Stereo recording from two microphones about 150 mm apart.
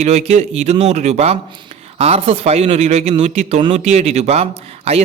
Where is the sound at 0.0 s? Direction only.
45° right (ahead or behind).